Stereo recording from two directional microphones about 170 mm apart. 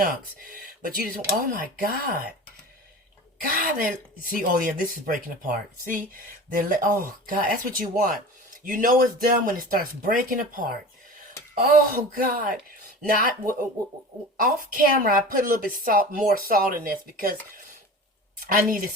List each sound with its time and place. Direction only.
0.0 s a woman's voice: 55° right (ahead or behind)
3.4 s a woman's voice: 60° right (ahead or behind)
11.9 s a woman's voice: 60° right (ahead or behind)
18.3 s a woman's voice: 55° right (ahead or behind)